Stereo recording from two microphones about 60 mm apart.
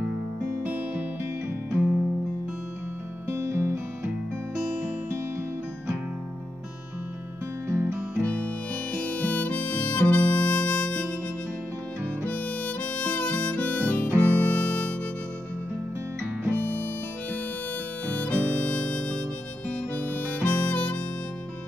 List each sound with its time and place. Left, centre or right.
0.7 s music: right
1.8 s guitar: centre
3.3 s music: right
7.6 s music: right
8.2 s harmonica: left
12.3 s harmonica: left
16.6 s harmonica: left
18.0 s harmonica: left